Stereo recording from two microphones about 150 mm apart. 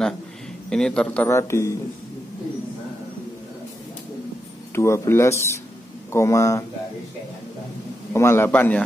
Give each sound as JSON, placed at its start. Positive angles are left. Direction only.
{"t": 0.7, "sound": "a man's voice", "side_deg": 5}
{"t": 4.7, "sound": "speech", "side_deg": 20}
{"t": 8.1, "sound": "a man's voice", "side_deg": 15}